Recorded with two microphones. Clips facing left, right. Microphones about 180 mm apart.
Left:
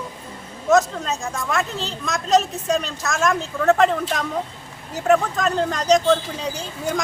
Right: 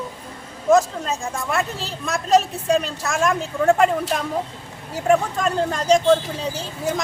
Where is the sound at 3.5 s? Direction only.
10° right (ahead or behind).